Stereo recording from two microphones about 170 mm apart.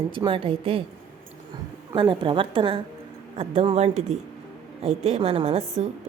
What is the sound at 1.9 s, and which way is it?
A woman's voice, 30° right (ahead or behind).